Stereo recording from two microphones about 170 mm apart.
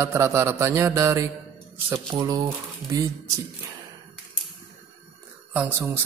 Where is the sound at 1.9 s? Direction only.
15° right (ahead or behind).